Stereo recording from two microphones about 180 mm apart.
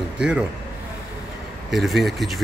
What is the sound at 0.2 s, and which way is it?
Speech, 5° right (ahead or behind).